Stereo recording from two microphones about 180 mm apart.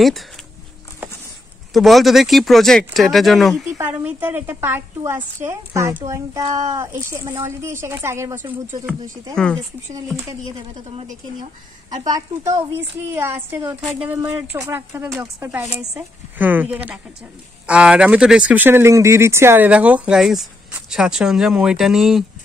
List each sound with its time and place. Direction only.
1.7 s speech: centre (ahead or behind)
3.7 s a woman's voice: 10° right (ahead or behind)
9.3 s speech: 5° left (ahead or behind)
9.9 s speech: 20° right (ahead or behind)
12.0 s a woman's voice: 20° right (ahead or behind)
15.0 s a woman's voice: centre (ahead or behind)